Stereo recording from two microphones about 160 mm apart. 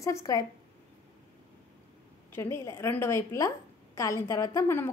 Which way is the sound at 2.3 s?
15° left (ahead or behind).